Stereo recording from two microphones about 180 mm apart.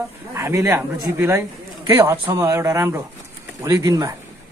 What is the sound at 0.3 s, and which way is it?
Speech, 15° right (ahead or behind).